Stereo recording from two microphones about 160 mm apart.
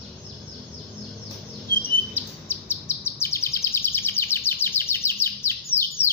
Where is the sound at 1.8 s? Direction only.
15° left (ahead or behind).